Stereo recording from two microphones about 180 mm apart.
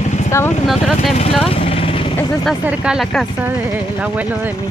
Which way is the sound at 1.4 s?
35° left (ahead or behind).